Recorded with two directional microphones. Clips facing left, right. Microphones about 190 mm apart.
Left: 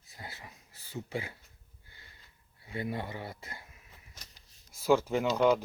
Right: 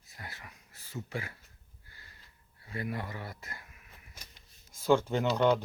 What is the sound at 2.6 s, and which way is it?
Speech, 25° left (ahead or behind).